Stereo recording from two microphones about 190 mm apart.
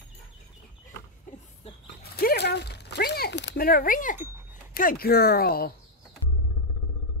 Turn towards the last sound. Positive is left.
turn(degrees=50)  # may be behind; listen again after turning